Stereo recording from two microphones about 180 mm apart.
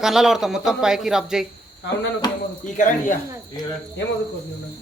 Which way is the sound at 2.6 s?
45° left (ahead or behind).